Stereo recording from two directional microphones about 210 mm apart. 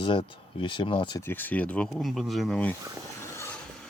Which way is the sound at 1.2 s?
10° left (ahead or behind).